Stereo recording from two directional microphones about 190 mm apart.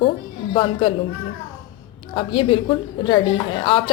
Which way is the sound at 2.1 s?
25° left (ahead or behind).